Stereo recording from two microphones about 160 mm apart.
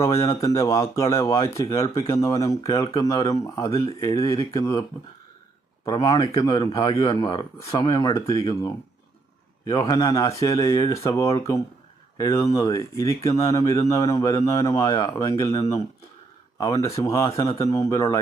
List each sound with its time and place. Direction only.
0.0 s a man's voice: 20° left (ahead or behind)